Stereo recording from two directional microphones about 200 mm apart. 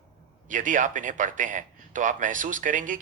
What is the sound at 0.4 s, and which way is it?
Speech, 40° right (ahead or behind).